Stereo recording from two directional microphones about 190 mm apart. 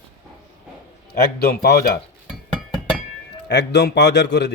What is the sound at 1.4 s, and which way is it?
Speech, 55° left (ahead or behind).